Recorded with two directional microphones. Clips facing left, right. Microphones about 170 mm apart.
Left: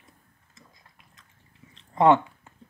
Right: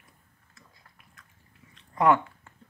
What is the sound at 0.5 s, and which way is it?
Chewing, 20° left (ahead or behind).